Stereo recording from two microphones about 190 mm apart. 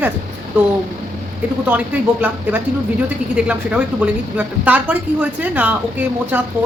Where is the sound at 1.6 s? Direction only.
10° right (ahead or behind).